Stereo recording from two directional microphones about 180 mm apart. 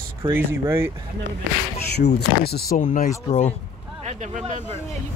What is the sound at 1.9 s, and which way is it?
Speech, 65° left (ahead or behind).